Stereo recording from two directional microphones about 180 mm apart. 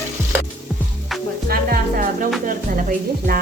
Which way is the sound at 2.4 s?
50° right (ahead or behind).